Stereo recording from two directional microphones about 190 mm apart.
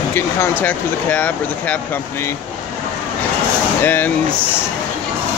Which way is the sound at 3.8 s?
10° left (ahead or behind).